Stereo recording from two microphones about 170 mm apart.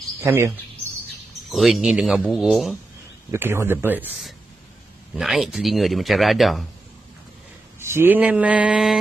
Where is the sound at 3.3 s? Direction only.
15° right (ahead or behind).